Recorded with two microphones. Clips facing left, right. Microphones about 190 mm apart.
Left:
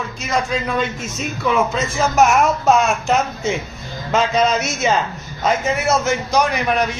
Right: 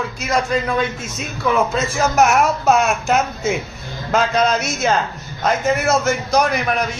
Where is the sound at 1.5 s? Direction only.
Centre (ahead or behind).